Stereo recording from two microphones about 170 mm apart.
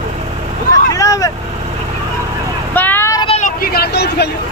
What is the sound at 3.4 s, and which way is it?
Speech, 65° left (ahead or behind).